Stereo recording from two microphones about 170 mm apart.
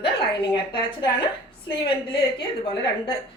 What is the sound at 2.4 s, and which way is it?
Speech, 30° left (ahead or behind).